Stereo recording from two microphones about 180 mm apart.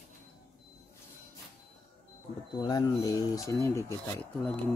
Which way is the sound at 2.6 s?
20° left (ahead or behind).